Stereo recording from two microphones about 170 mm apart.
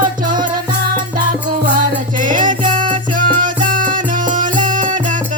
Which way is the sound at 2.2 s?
50° right (ahead or behind).